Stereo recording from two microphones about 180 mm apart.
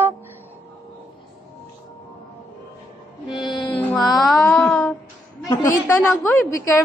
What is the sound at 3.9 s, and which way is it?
Music, centre (ahead or behind).